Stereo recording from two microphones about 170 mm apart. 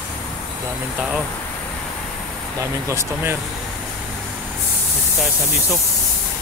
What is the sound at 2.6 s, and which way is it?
Speech, 15° right (ahead or behind).